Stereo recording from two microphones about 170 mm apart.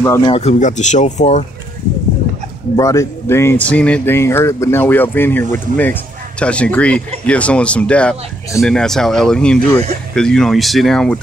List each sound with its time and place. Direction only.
0.2 s speech: 35° left (ahead or behind)
2.7 s speech: 20° left (ahead or behind); by 11.1 s 5° left (ahead or behind)